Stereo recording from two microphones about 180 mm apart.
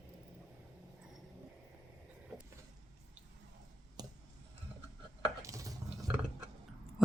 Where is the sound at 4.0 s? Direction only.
20° right (ahead or behind).